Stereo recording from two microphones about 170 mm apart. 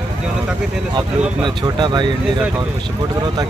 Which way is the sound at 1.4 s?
25° right (ahead or behind).